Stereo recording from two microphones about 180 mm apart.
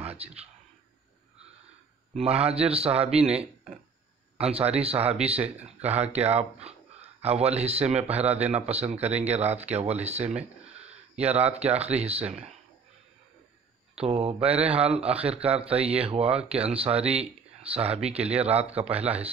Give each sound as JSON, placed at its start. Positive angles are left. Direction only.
{"t": 0.0, "sound": "a sound", "side_deg": -35}
{"t": 2.1, "sound": "speech", "side_deg": -35}
{"t": 4.4, "sound": "speech", "side_deg": -35}
{"t": 10.7, "sound": "a sound", "side_deg": -35}
{"t": 11.2, "sound": "speech", "side_deg": -35}
{"t": 13.9, "sound": "speech", "side_deg": -35}
{"t": 19.0, "sound": "speech", "side_deg": -10}